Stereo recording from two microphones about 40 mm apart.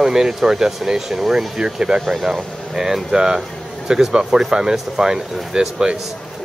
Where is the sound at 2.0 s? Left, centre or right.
Centre.